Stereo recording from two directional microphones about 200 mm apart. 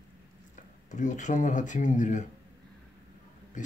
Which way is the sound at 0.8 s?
35° left (ahead or behind).